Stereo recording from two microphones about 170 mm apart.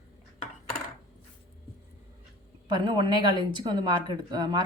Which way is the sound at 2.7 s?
25° right (ahead or behind).